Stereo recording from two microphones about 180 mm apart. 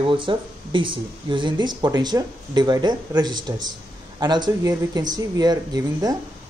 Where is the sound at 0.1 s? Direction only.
25° right (ahead or behind).